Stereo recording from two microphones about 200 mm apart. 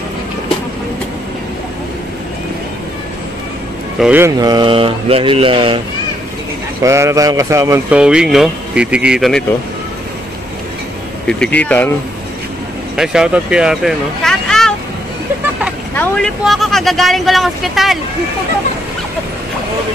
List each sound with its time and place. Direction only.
4.0 s speech: 10° right (ahead or behind); by 5.8 s 25° right (ahead or behind)
6.8 s speech: 15° right (ahead or behind)
11.2 s speech: 5° left (ahead or behind)
12.9 s speech: 5° right (ahead or behind)
15.9 s speech: 5° left (ahead or behind)